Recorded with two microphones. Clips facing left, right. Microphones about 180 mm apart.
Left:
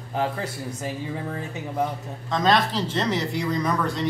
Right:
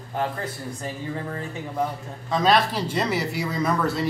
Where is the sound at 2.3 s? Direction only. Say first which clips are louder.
Right 1 dB; 10° right (ahead or behind).